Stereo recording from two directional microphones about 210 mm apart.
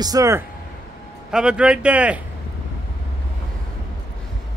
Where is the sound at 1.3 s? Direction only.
5° right (ahead or behind).